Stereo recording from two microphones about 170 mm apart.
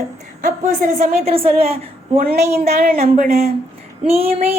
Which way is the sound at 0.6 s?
50° right (ahead or behind).